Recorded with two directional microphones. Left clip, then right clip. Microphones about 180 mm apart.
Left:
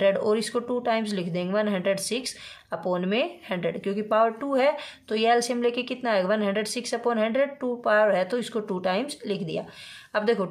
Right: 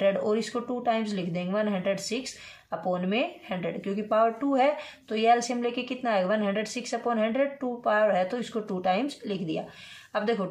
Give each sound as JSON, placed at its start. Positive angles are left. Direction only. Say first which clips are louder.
{"t": 0.0, "sound": "speech", "louder": "left 3 dB", "side_deg": 40}